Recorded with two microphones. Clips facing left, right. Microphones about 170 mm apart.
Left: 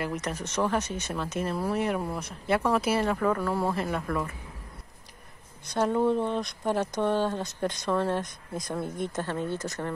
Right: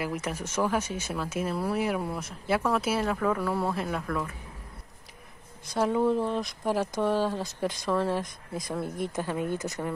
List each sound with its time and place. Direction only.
0.0 s speech: 5° right (ahead or behind)
5.7 s speech: 5° right (ahead or behind)